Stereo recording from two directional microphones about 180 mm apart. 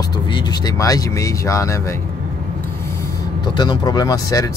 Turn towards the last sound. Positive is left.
turn(degrees=20)  # may be behind; listen again after turning